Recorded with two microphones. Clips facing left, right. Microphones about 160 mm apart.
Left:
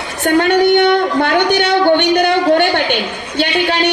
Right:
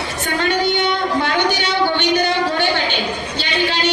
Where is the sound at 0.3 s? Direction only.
65° left (ahead or behind).